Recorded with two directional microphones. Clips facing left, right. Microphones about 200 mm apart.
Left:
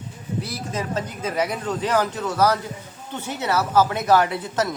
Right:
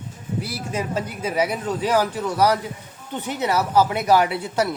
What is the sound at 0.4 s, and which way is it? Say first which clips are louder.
Speech: right 3 dB; 10° right (ahead or behind).